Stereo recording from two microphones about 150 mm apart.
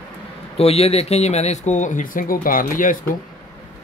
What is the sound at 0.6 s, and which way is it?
Speech, 45° left (ahead or behind).